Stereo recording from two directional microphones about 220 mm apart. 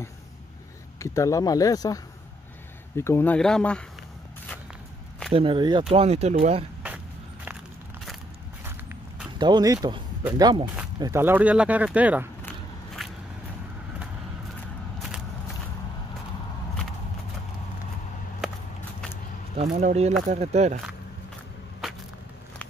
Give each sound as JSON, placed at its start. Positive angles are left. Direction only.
{"t": 0.9, "sound": "speech", "side_deg": 15}
{"t": 3.0, "sound": "speech", "side_deg": 10}
{"t": 5.3, "sound": "speech", "side_deg": -25}
{"t": 8.6, "sound": "walk", "side_deg": -10}
{"t": 10.2, "sound": "speech", "side_deg": -15}
{"t": 12.4, "sound": "walk", "side_deg": 0}
{"t": 15.0, "sound": "walk", "side_deg": 0}
{"t": 19.5, "sound": "speech", "side_deg": -30}